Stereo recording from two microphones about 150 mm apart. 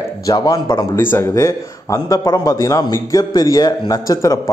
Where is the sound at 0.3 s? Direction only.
30° left (ahead or behind).